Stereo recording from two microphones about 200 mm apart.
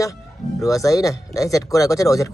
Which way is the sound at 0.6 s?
15° left (ahead or behind).